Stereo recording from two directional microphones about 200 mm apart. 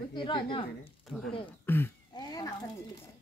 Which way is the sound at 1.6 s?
10° left (ahead or behind).